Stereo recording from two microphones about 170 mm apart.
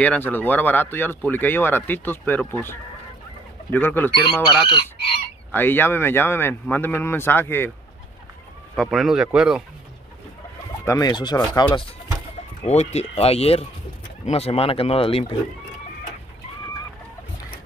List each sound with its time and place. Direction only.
0.0 s speech: 10° left (ahead or behind)
4.7 s speech: 30° left (ahead or behind)
5.5 s speech: 10° left (ahead or behind)
8.7 s speech: centre (ahead or behind)
10.9 s speech: 25° left (ahead or behind)
12.6 s speech: 40° left (ahead or behind)